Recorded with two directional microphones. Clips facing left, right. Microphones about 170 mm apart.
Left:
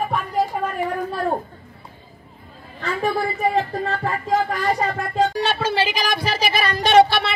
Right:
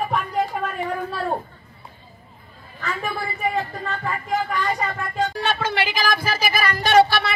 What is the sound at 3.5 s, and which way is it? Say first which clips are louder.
Speech: left 5 dB; 30° left (ahead or behind).